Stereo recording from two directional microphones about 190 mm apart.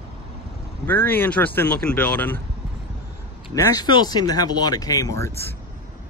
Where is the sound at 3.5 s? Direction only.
20° left (ahead or behind).